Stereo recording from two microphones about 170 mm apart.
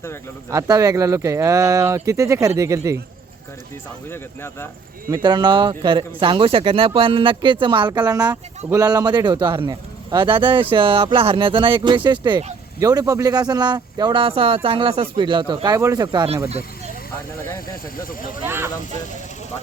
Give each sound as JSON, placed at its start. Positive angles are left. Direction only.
{"t": 0.5, "sound": "speech", "side_deg": -20}
{"t": 4.1, "sound": "speech", "side_deg": 15}
{"t": 5.1, "sound": "speech", "side_deg": -25}
{"t": 16.5, "sound": "vehicle", "side_deg": -40}
{"t": 17.9, "sound": "speech", "side_deg": 55}
{"t": 18.4, "sound": "speech", "side_deg": -15}